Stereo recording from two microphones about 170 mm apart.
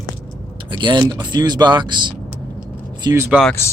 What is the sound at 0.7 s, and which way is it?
Speech, 25° right (ahead or behind).